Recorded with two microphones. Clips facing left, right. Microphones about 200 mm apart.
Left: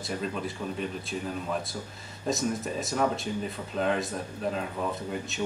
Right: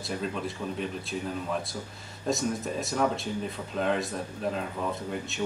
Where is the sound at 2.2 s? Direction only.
Centre (ahead or behind).